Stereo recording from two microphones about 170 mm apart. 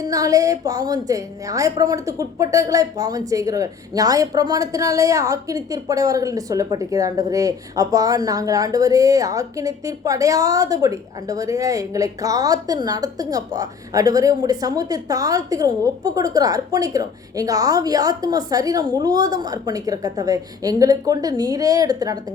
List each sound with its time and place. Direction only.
0.0 s speech: 20° right (ahead or behind)